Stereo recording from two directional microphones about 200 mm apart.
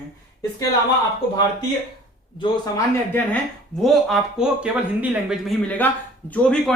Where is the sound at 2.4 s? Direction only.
15° left (ahead or behind).